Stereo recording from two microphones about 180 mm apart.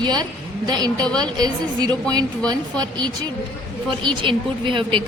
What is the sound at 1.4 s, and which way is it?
Speech, 20° right (ahead or behind).